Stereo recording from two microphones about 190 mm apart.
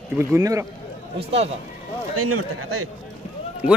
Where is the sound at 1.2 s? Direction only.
30° right (ahead or behind).